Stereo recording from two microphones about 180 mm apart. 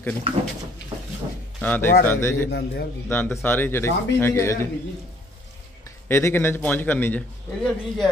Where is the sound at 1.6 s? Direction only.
10° left (ahead or behind).